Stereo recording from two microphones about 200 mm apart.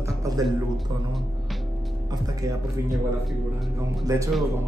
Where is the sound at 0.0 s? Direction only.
15° right (ahead or behind).